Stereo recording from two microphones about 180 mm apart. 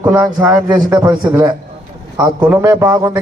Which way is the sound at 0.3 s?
20° right (ahead or behind).